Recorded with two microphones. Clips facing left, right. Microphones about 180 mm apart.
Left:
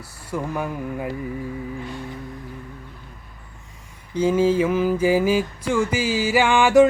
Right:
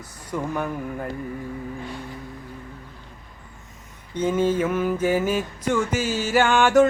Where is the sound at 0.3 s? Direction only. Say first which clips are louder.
Even; 5° left (ahead or behind).